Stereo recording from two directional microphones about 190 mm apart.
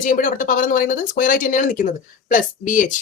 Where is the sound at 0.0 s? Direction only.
45° left (ahead or behind).